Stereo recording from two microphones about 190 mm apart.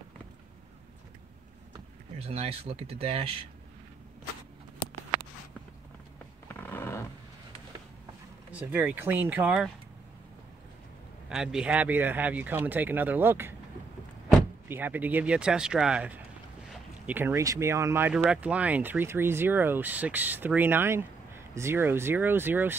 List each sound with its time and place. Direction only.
1.7 s speech: 35° right (ahead or behind)
6.5 s a sound: 10° left (ahead or behind)
8.5 s speech: 5° right (ahead or behind)
11.2 s speech: 5° right (ahead or behind)
14.7 s speech: 10° right (ahead or behind)